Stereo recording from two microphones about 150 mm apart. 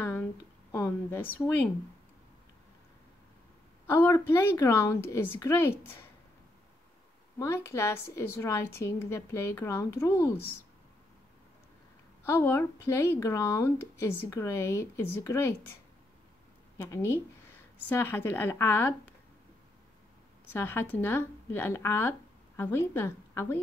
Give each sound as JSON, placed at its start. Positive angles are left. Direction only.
{"t": 0.0, "sound": "a sound", "side_deg": 15}
{"t": 3.8, "sound": "a woman's voice", "side_deg": 15}
{"t": 7.3, "sound": "a woman's voice", "side_deg": 20}
{"t": 12.3, "sound": "a woman's voice", "side_deg": 15}
{"t": 16.7, "sound": "a woman's voice", "side_deg": 20}
{"t": 20.5, "sound": "a woman's voice", "side_deg": 15}